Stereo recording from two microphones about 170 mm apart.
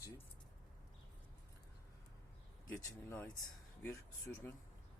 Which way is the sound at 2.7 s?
15° left (ahead or behind).